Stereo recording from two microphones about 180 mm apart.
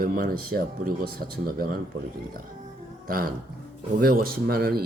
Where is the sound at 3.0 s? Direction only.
55° right (ahead or behind).